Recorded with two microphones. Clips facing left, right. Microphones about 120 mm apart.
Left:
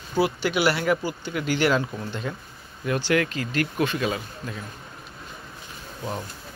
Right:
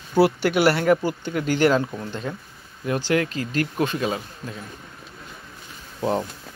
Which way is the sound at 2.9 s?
30° right (ahead or behind).